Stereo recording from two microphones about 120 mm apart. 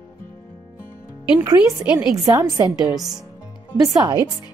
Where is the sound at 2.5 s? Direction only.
30° right (ahead or behind).